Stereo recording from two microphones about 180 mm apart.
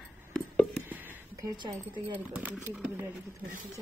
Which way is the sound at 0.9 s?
10° right (ahead or behind).